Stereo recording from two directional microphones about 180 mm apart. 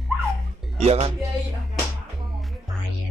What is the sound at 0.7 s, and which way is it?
Speech, 35° right (ahead or behind).